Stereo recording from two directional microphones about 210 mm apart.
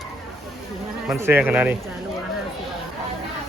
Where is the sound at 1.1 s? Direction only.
10° right (ahead or behind).